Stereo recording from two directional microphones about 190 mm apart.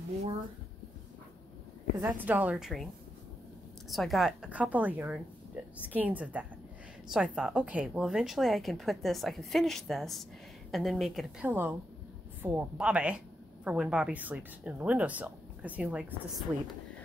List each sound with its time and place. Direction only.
2.0 s a woman's voice: 15° right (ahead or behind)
3.9 s a woman's voice: centre (ahead or behind)